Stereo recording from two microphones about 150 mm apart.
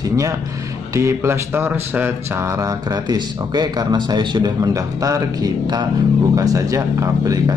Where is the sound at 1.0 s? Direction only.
15° right (ahead or behind).